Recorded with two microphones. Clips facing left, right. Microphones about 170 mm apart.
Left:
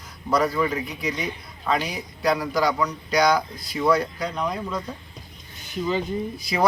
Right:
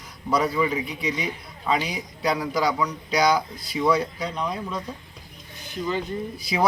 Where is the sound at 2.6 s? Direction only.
5° right (ahead or behind).